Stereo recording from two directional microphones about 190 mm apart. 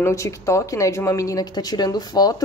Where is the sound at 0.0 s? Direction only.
15° left (ahead or behind).